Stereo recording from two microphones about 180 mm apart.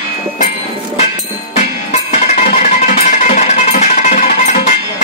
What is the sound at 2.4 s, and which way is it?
Music, 40° left (ahead or behind).